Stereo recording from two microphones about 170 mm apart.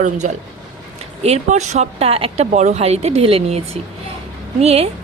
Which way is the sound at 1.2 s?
40° right (ahead or behind).